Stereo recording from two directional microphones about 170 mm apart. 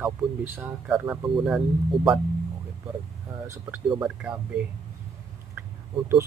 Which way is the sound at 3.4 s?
15° right (ahead or behind).